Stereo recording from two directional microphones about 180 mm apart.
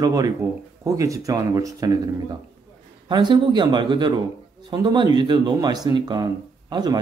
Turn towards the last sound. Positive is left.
turn(degrees=-25)  # may be behind; listen again after turning